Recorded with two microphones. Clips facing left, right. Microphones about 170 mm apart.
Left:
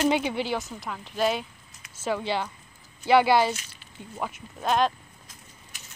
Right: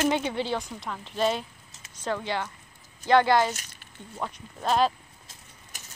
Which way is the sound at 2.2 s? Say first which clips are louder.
Left 2 dB; 15° left (ahead or behind).